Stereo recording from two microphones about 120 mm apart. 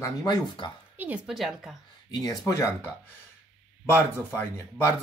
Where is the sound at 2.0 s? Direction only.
35° left (ahead or behind).